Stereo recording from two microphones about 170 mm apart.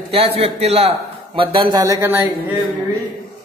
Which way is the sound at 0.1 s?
35° right (ahead or behind).